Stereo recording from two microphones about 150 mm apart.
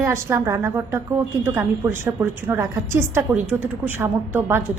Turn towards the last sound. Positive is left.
turn(degrees=-15)  # may be behind; listen again after turning